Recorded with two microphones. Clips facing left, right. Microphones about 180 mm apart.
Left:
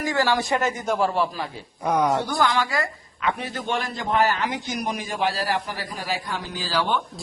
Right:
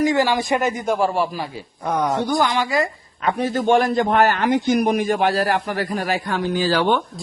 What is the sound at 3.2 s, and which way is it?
A man's voice, 40° right (ahead or behind).